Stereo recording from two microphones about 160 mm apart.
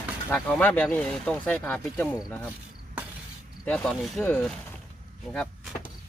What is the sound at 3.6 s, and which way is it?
Speech, 5° left (ahead or behind).